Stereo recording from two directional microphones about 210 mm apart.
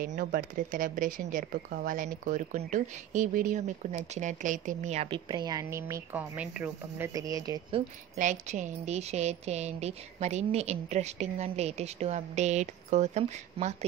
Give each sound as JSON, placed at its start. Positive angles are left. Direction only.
{"t": 0.2, "sound": "speech", "side_deg": -40}
{"t": 8.2, "sound": "speech", "side_deg": -35}